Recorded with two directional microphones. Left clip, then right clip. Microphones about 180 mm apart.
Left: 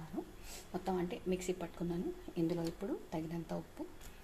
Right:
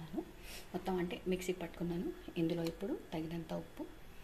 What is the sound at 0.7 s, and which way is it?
A woman's voice, 5° left (ahead or behind).